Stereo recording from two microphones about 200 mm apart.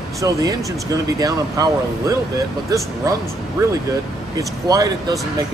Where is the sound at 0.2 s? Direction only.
15° right (ahead or behind).